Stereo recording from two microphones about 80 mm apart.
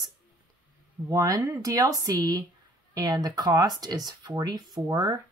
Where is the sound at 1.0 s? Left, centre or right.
Right.